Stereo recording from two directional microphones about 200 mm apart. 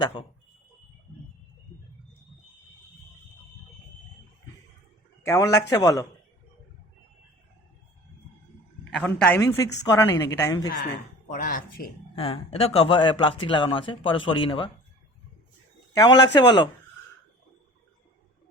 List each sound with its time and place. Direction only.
0.0 s speech: 25° left (ahead or behind)
5.2 s a man's voice: 15° left (ahead or behind)
9.0 s a woman's voice: 5° left (ahead or behind)
11.3 s speech: 40° left (ahead or behind)
12.1 s speech: 30° left (ahead or behind)
15.9 s speech: 20° left (ahead or behind)